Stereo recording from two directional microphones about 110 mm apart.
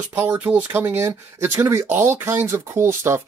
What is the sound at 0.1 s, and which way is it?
Speech, 15° right (ahead or behind).